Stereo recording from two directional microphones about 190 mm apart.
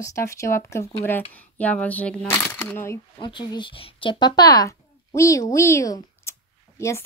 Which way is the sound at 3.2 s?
25° left (ahead or behind).